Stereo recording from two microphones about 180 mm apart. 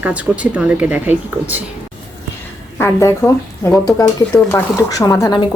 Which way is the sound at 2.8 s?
15° left (ahead or behind).